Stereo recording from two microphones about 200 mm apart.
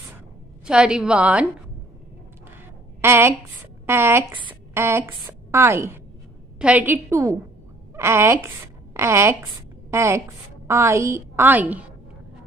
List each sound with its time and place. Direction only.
0.7 s a woman's voice: 5° right (ahead or behind)
3.0 s a woman's voice: 10° right (ahead or behind)